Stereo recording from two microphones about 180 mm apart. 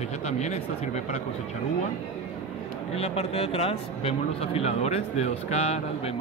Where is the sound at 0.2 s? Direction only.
40° left (ahead or behind).